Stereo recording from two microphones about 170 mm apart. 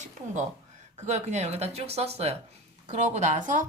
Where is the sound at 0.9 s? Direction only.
45° right (ahead or behind).